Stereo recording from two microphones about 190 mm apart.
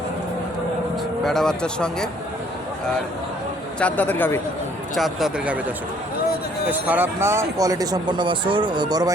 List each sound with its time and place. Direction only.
1.2 s speech: centre (ahead or behind)
3.8 s speech: 10° left (ahead or behind)
4.9 s speech: centre (ahead or behind)
6.7 s speech: 10° right (ahead or behind)